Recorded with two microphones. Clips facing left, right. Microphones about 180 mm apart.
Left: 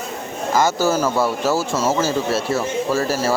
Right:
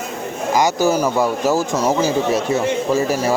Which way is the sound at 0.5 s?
15° right (ahead or behind).